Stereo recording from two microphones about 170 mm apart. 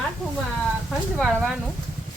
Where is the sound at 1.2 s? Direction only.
Centre (ahead or behind).